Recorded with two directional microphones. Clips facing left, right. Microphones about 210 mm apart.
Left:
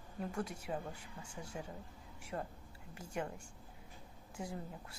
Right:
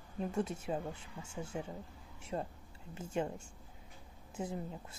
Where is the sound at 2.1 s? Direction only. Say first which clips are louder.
Right 4 dB; 25° right (ahead or behind).